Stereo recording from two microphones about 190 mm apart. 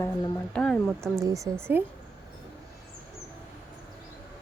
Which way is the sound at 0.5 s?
5° left (ahead or behind).